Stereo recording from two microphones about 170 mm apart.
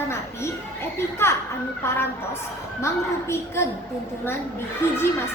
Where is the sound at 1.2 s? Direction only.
15° left (ahead or behind).